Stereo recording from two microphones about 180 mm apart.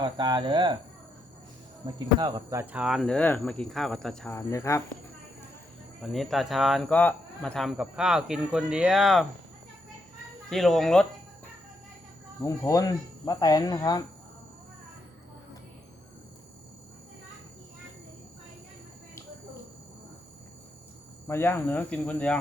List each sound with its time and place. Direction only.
0.0 s speech: 25° right (ahead or behind)
2.0 s speech: 25° right (ahead or behind); by 4.4 s 5° left (ahead or behind)
4.4 s speech: 15° left (ahead or behind)
6.0 s speech: centre (ahead or behind)
10.5 s speech: centre (ahead or behind)
12.4 s speech: 20° left (ahead or behind)
21.2 s speech: 15° left (ahead or behind)